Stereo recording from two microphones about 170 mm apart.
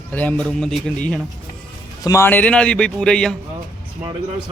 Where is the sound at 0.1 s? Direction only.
10° left (ahead or behind).